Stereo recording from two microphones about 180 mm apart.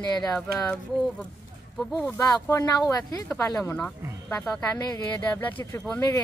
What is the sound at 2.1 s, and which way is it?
Speech, 15° left (ahead or behind).